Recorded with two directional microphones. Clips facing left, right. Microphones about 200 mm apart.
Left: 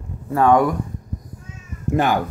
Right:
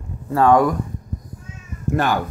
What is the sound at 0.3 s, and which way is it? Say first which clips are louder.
Speech: right 1 dB; 20° left (ahead or behind).